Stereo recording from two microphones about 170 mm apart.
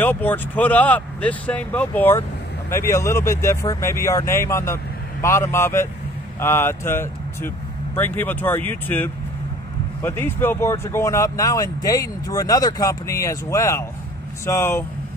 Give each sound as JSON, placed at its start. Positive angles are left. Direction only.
{"t": 0.0, "sound": "speech", "side_deg": 10}